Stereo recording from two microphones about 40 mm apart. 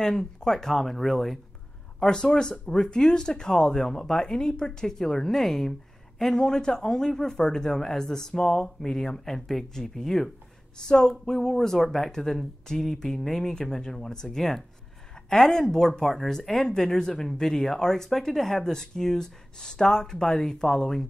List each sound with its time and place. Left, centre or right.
0.0 s speech: centre
2.0 s speech: left
10.8 s speech: centre